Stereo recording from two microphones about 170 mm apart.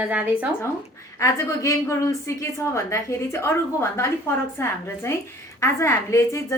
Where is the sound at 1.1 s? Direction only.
15° left (ahead or behind).